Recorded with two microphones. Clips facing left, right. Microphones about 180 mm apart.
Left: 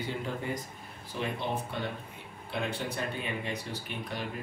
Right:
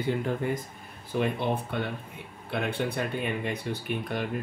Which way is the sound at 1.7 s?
60° right (ahead or behind).